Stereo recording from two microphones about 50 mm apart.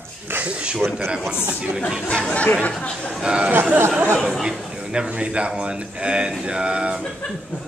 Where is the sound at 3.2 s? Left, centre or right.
Centre.